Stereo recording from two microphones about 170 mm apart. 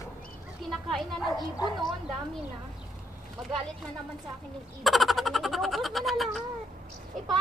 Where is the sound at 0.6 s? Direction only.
Centre (ahead or behind).